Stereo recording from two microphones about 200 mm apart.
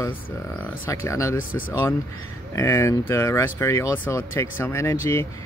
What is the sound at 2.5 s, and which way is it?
Speech, 15° left (ahead or behind).